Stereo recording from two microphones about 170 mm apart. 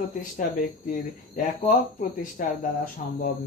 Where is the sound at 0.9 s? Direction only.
50° left (ahead or behind).